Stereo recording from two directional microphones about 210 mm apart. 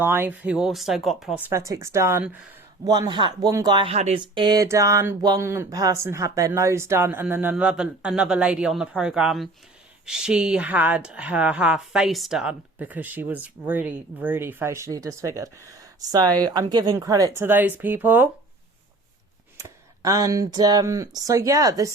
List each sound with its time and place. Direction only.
0.0 s speech: 10° right (ahead or behind)
2.8 s speech: 20° right (ahead or behind)
19.5 s speech: 15° right (ahead or behind)